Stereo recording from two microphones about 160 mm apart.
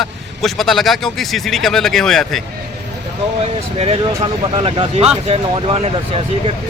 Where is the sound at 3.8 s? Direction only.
35° right (ahead or behind).